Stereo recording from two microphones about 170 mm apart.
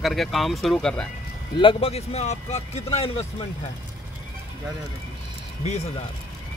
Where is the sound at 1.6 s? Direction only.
30° left (ahead or behind).